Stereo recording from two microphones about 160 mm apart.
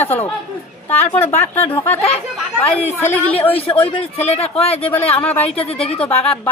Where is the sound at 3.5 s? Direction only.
40° left (ahead or behind).